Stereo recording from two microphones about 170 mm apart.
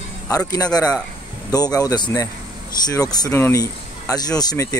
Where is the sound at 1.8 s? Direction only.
20° left (ahead or behind).